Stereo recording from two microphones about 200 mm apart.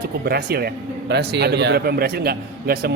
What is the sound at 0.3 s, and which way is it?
A man's voice, 50° right (ahead or behind).